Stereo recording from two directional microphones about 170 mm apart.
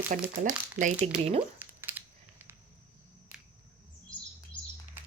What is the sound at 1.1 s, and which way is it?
Speech, 5° right (ahead or behind).